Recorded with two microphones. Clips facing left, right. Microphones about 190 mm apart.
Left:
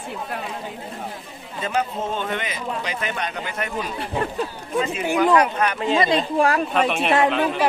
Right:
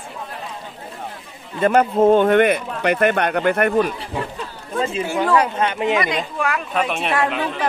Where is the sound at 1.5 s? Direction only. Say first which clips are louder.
Right 9 dB; 55° right (ahead or behind).